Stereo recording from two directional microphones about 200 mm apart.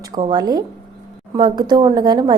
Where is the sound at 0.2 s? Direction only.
20° right (ahead or behind).